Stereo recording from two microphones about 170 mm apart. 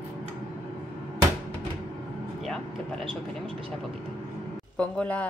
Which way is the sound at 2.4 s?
Centre (ahead or behind).